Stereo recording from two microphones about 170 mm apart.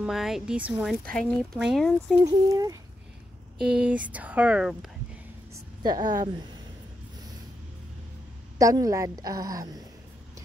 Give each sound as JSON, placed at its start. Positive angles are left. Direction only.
{"t": 0.0, "sound": "speech", "side_deg": 0}
{"t": 1.0, "sound": "speech", "side_deg": 5}
{"t": 2.2, "sound": "a woman's voice", "side_deg": -20}
{"t": 3.5, "sound": "speech", "side_deg": -5}
{"t": 5.5, "sound": "a woman's voice", "side_deg": -25}
{"t": 8.5, "sound": "a woman's voice", "side_deg": -20}